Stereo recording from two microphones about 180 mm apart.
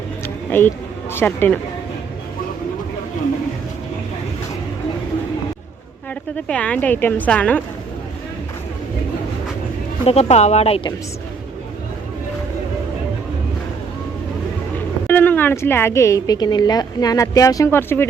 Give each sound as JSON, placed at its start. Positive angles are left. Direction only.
{"t": 1.1, "sound": "a woman's voice", "side_deg": 10}
{"t": 6.5, "sound": "a woman's voice", "side_deg": 5}
{"t": 10.1, "sound": "speech", "side_deg": 35}
{"t": 15.0, "sound": "a woman's voice", "side_deg": 10}